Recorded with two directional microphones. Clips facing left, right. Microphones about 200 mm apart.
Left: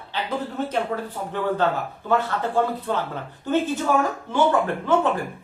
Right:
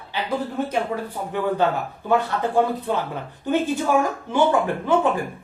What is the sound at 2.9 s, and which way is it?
Speech, 15° right (ahead or behind).